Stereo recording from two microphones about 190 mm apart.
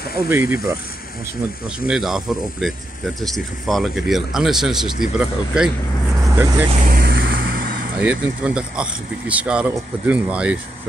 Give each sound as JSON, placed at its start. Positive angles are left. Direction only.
{"t": 0.3, "sound": "speech", "side_deg": -15}
{"t": 1.9, "sound": "speech", "side_deg": 0}
{"t": 6.9, "sound": "vehicle", "side_deg": -50}
{"t": 8.0, "sound": "speech", "side_deg": -5}